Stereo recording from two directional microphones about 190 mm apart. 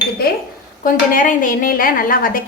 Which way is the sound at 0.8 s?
45° left (ahead or behind).